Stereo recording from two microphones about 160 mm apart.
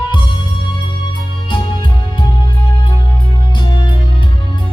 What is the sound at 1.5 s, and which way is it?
Music, 30° left (ahead or behind).